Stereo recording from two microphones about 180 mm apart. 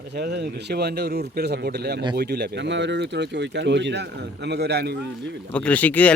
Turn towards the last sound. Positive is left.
turn(degrees=10)  # may be behind; listen again after turning